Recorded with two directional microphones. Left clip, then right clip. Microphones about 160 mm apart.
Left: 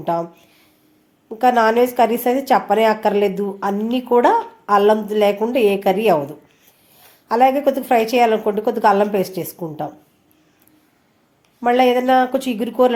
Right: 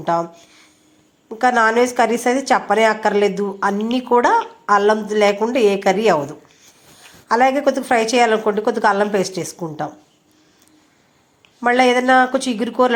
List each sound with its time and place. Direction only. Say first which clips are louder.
0.0 s a woman's voice: right 2 dB; 10° left (ahead or behind)
11.6 s a woman's voice: even; centre (ahead or behind)